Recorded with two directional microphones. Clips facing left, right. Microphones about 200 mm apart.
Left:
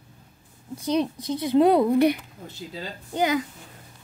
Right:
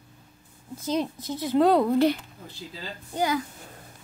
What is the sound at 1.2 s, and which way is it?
A woman's voice, 15° left (ahead or behind).